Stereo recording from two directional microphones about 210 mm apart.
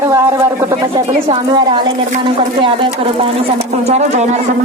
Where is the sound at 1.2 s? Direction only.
25° right (ahead or behind).